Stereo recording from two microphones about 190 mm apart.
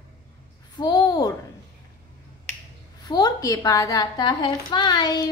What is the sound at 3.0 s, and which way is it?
A woman's voice, 20° left (ahead or behind).